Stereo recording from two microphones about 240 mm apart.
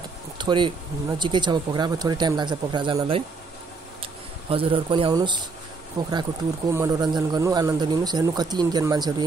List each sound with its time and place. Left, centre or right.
0.4 s speech: centre